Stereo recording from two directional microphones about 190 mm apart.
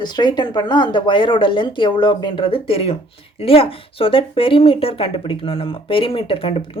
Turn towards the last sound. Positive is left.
turn(degrees=30)  # may be behind; listen again after turning